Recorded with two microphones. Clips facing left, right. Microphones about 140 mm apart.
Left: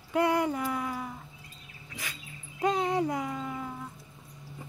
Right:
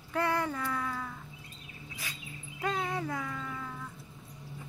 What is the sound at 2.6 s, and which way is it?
Dog, 20° left (ahead or behind).